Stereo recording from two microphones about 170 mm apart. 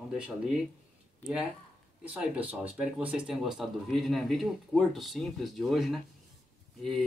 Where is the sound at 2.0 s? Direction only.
5° right (ahead or behind).